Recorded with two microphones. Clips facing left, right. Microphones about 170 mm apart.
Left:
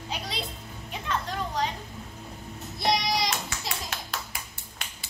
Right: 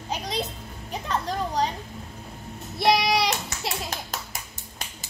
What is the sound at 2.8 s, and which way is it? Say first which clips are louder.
Child singing: right 5 dB; 65° right (ahead or behind).